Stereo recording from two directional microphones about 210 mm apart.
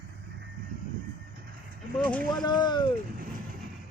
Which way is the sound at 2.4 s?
20° left (ahead or behind).